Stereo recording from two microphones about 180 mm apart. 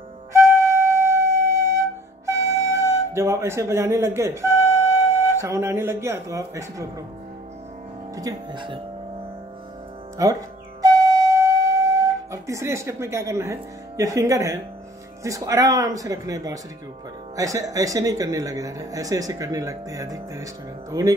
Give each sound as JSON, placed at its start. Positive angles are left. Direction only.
{"t": 0.3, "sound": "flute", "side_deg": -15}
{"t": 5.1, "sound": "speech", "side_deg": -15}
{"t": 8.2, "sound": "speech", "side_deg": -20}
{"t": 10.2, "sound": "speech", "side_deg": -15}
{"t": 10.8, "sound": "flute", "side_deg": -20}
{"t": 15.2, "sound": "speech", "side_deg": -20}